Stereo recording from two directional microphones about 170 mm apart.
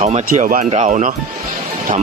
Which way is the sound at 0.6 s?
35° right (ahead or behind).